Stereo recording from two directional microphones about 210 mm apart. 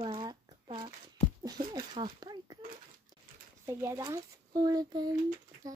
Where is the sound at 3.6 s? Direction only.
10° right (ahead or behind).